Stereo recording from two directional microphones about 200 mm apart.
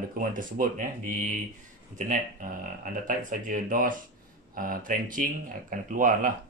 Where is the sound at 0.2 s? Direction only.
45° right (ahead or behind).